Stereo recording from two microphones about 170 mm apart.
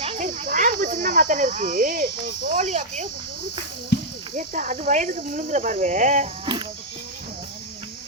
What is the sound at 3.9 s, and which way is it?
Cricket, 90° left.